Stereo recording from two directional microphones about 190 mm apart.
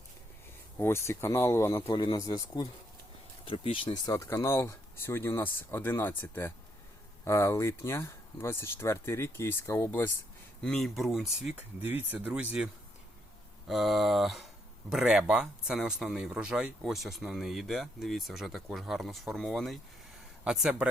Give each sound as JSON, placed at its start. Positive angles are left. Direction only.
{"t": 0.8, "sound": "speech", "side_deg": 15}
{"t": 3.4, "sound": "speech", "side_deg": 30}
{"t": 10.6, "sound": "speech", "side_deg": 0}
{"t": 13.7, "sound": "speech", "side_deg": 0}